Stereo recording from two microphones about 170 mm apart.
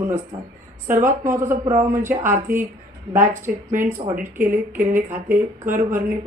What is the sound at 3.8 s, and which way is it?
Speech, 15° right (ahead or behind).